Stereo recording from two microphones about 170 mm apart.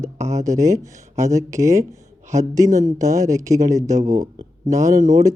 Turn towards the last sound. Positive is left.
turn(degrees=-50)  # may be behind; listen again after turning